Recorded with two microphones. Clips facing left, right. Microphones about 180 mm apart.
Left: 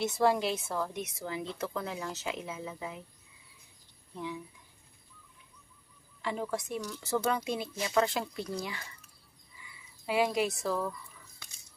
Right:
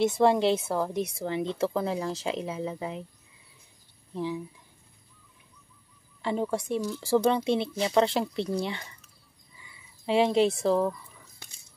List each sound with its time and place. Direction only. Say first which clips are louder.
0.1 s speech: right 6 dB; 25° right (ahead or behind)
4.1 s speech: right 7 dB; 30° right (ahead or behind)
6.2 s speech: right 6 dB; 30° right (ahead or behind)
10.0 s speech: right 6 dB; 25° right (ahead or behind)